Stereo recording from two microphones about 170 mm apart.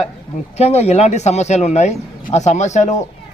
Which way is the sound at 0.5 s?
40° left (ahead or behind).